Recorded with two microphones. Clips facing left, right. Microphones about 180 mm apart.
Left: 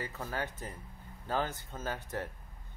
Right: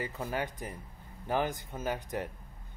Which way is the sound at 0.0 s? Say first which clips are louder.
Right 3 dB; 15° right (ahead or behind).